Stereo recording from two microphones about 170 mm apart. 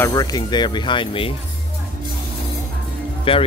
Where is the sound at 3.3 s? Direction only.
30° left (ahead or behind).